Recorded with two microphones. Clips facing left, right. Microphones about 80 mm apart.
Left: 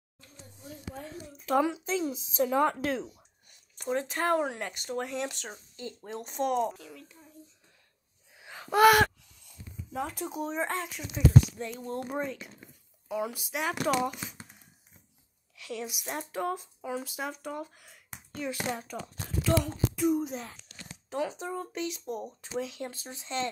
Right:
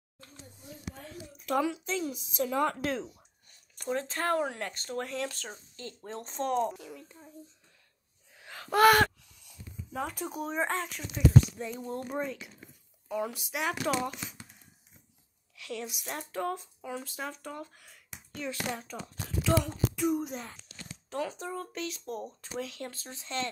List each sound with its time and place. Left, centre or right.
1.4 s a woman's voice: left
2.8 s speech: centre
6.0 s speech: centre
6.6 s a child's voice: centre
8.4 s gasp: centre
9.9 s speech: centre
15.5 s speech: centre
21.1 s speech: centre